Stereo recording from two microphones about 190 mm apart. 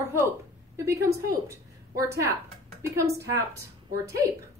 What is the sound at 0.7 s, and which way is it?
Speech, 15° right (ahead or behind).